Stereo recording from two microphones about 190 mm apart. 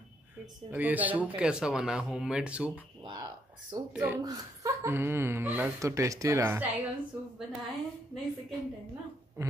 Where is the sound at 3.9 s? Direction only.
10° right (ahead or behind).